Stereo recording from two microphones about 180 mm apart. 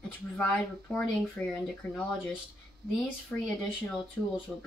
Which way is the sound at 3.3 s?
10° left (ahead or behind).